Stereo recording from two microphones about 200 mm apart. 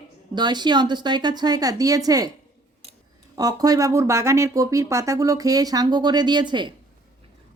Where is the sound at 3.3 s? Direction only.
20° right (ahead or behind).